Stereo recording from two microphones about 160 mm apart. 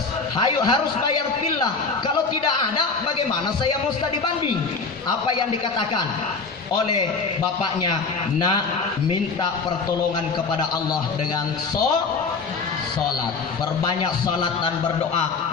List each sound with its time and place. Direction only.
0.3 s a man's voice: 30° left (ahead or behind)